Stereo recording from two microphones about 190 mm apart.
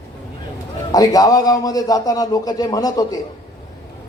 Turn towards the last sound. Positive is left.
turn(degrees=20)  # may be behind; listen again after turning